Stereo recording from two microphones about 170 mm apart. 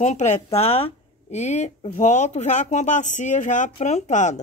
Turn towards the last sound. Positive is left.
turn(degrees=45)  # may be behind; listen again after turning